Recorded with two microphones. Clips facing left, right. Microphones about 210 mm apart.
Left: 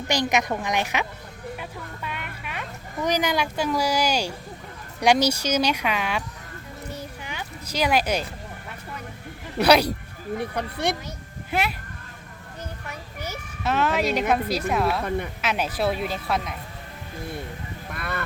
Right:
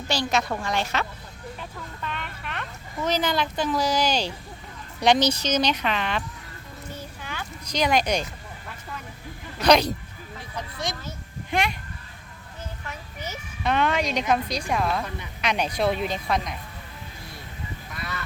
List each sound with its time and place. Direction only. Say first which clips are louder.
0.1 s speech: left 2 dB; 15° left (ahead or behind)
7.2 s a sound: left 1 dB; 15° left (ahead or behind)
9.6 s speech: left 1 dB; 10° left (ahead or behind)
10.3 s speech: left 8 dB; 60° left (ahead or behind)
11.5 s speech: even; 5° left (ahead or behind)
12.9 s a child's voice: left 1 dB; 10° left (ahead or behind)
17.9 s honk: left 5 dB; 55° left (ahead or behind)